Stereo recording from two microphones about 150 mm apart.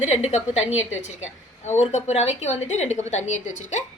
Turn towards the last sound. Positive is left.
turn(degrees=50)  # may be behind; listen again after turning